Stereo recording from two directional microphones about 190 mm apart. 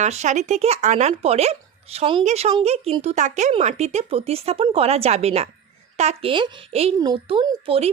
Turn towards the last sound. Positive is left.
turn(degrees=-30)  # may be behind; listen again after turning